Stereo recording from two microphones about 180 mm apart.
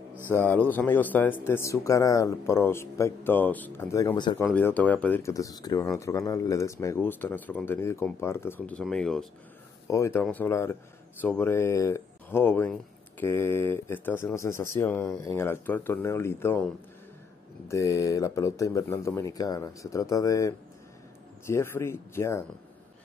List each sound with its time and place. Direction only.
0.3 s speech: 10° left (ahead or behind)
4.5 s speech: 10° left (ahead or behind)
9.8 s speech: 15° left (ahead or behind)